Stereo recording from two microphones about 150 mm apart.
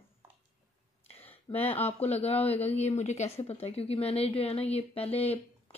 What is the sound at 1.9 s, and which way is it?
Speech, 45° left (ahead or behind).